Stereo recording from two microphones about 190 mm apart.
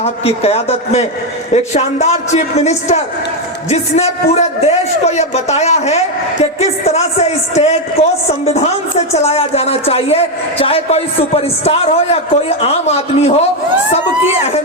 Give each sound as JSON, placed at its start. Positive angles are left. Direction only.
{"t": 0.0, "sound": "a man's voice", "side_deg": 35}